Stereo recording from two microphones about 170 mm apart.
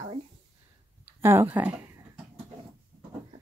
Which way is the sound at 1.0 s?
15° right (ahead or behind).